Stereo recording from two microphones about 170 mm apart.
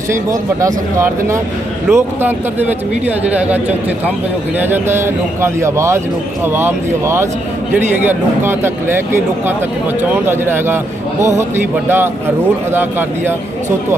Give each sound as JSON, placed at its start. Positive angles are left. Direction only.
{"t": 0.1, "sound": "speech", "side_deg": -20}
{"t": 4.6, "sound": "speech", "side_deg": -15}
{"t": 8.4, "sound": "speech", "side_deg": -15}
{"t": 11.9, "sound": "speech", "side_deg": -15}